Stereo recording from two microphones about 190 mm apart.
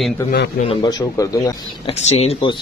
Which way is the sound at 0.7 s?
25° left (ahead or behind).